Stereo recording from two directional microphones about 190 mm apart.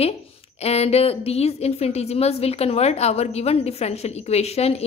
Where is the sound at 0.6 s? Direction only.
35° left (ahead or behind).